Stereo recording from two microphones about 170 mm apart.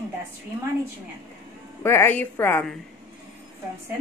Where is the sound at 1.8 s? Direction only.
15° left (ahead or behind).